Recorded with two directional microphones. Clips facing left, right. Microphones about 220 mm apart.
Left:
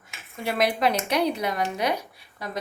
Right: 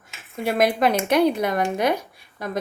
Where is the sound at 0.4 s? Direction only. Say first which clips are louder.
Right 4 dB; 50° right (ahead or behind).